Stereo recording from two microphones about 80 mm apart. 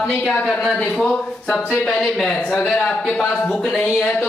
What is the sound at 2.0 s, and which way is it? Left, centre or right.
Speech, centre.